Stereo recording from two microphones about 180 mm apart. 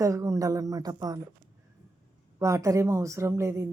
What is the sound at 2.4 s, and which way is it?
A woman's voice, 15° right (ahead or behind).